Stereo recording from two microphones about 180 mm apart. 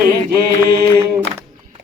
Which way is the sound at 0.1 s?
60° right (ahead or behind).